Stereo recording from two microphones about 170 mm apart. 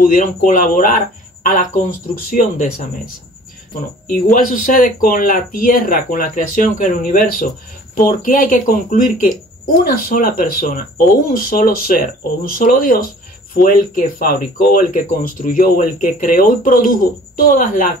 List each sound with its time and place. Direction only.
0.0 s speech: 50° left (ahead or behind)
4.1 s speech: 55° left (ahead or behind)